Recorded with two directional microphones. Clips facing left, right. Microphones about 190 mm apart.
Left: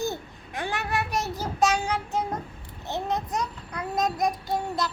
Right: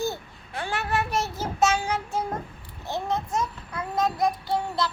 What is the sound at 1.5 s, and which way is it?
Child singing, 15° left (ahead or behind).